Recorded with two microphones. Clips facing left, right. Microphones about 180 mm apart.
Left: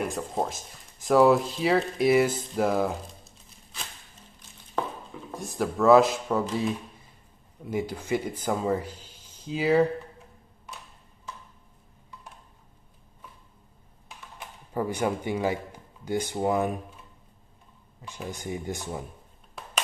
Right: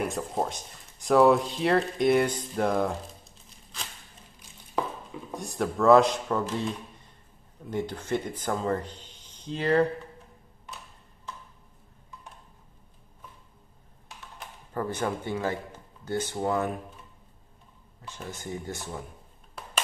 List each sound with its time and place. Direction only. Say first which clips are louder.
0.0 s speech: even; centre (ahead or behind)
4.8 s a sound: even; 10° right (ahead or behind)
5.3 s speech: left 1 dB; centre (ahead or behind)
14.7 s speech: left 3 dB; 10° left (ahead or behind)
18.0 s speech: left 3 dB; 15° left (ahead or behind)